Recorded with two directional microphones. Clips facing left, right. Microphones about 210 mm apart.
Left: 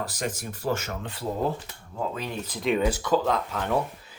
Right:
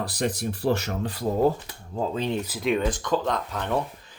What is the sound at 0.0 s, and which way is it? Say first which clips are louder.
Speech: right 4 dB; 35° right (ahead or behind).